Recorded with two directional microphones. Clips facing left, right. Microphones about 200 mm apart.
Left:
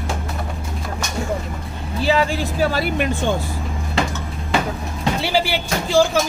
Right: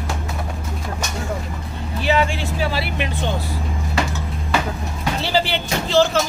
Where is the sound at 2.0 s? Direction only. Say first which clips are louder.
Left 1 dB; 35° left (ahead or behind).